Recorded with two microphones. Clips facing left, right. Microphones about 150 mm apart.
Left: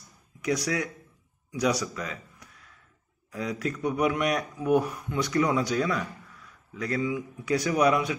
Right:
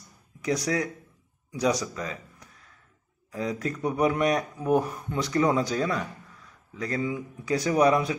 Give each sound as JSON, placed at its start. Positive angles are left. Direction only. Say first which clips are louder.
{"t": 0.5, "sound": "speech", "louder": "right 1 dB", "side_deg": -35}
{"t": 1.6, "sound": "speech", "louder": "right 1 dB", "side_deg": -25}
{"t": 2.0, "sound": "a sound", "louder": "right 2 dB", "side_deg": -35}
{"t": 3.3, "sound": "speech", "louder": "right 1 dB", "side_deg": -35}